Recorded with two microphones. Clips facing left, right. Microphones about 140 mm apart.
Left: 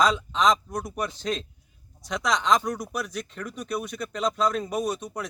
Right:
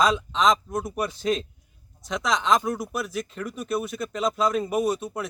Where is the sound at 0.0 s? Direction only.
5° right (ahead or behind).